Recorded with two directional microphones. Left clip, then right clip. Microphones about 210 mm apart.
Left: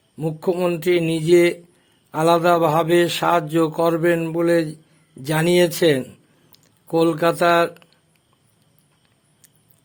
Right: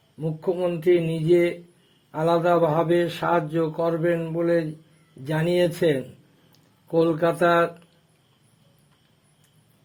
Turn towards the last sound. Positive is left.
turn(degrees=25)  # may be behind; listen again after turning